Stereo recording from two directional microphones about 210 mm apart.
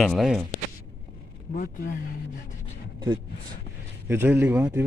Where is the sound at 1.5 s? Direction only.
40° left (ahead or behind).